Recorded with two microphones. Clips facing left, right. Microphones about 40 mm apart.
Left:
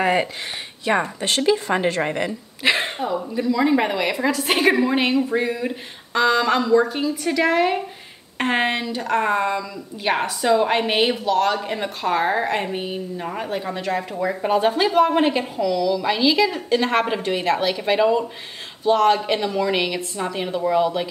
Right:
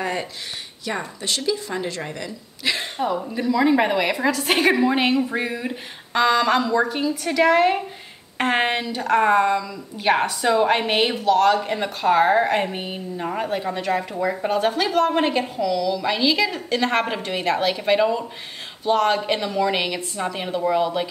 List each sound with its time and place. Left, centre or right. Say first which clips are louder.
0.0 s a woman's voice: left 6 dB; left
3.1 s a woman's voice: right 2 dB; centre